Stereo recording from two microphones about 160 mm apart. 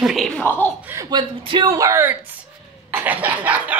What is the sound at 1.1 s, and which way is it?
Speech, 30° right (ahead or behind).